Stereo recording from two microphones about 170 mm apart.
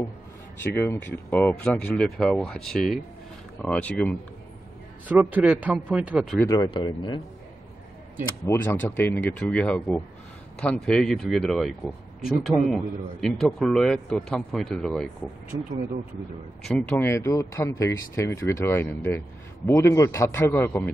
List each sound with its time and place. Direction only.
0.6 s a man's voice: 15° left (ahead or behind)
5.0 s a man's voice: 10° right (ahead or behind)
6.4 s speech: 25° left (ahead or behind)
8.5 s a man's voice: 10° left (ahead or behind)
16.6 s a man's voice: centre (ahead or behind)
17.1 s speech: 15° left (ahead or behind)